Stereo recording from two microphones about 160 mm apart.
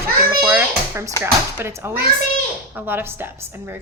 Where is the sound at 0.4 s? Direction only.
15° right (ahead or behind).